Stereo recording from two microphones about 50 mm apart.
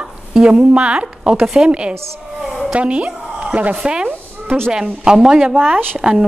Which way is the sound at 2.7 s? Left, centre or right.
Right.